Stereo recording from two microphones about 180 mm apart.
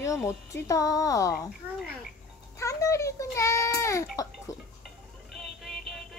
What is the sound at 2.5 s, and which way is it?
A child's voice, 15° left (ahead or behind).